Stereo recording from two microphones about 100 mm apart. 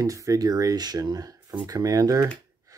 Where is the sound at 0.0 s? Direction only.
35° right (ahead or behind).